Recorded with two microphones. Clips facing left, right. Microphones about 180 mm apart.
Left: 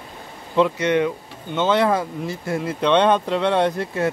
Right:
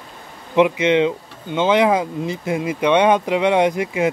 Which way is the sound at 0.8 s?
20° right (ahead or behind).